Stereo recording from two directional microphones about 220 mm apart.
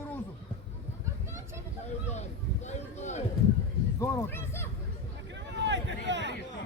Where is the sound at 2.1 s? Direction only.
30° left (ahead or behind).